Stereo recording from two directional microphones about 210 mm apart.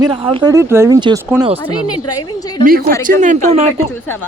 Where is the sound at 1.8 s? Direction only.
90° left.